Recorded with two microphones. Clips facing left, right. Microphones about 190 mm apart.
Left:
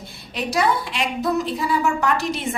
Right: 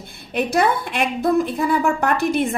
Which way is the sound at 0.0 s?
55° right (ahead or behind).